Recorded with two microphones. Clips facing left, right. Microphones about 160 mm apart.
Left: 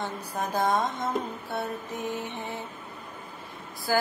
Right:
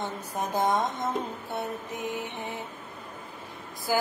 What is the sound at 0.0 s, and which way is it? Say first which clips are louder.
Speech: even; 20° right (ahead or behind).